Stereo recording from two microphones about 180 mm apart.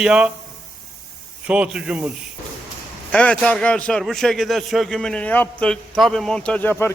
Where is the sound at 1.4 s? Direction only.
5° right (ahead or behind).